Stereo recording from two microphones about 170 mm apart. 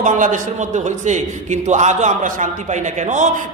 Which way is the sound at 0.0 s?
50° right (ahead or behind).